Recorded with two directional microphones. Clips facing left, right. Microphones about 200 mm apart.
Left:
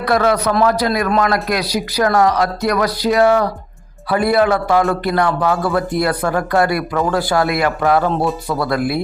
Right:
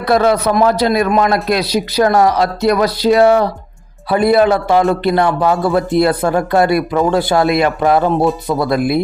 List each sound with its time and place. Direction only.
0.0 s a man's voice: 25° right (ahead or behind)